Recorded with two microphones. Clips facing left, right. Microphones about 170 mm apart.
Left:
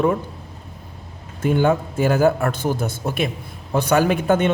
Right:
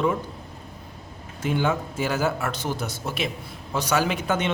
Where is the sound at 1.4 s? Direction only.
50° left (ahead or behind).